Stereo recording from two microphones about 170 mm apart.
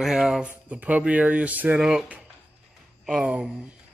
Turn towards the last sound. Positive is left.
turn(degrees=-5)  # may be behind; listen again after turning